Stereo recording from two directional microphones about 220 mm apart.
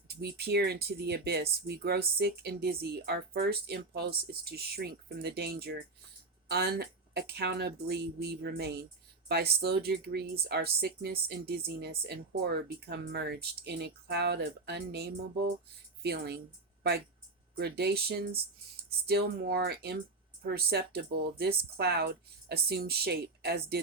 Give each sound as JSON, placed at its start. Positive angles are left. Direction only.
{"t": 0.1, "sound": "speech", "side_deg": -45}
{"t": 17.6, "sound": "speech", "side_deg": -45}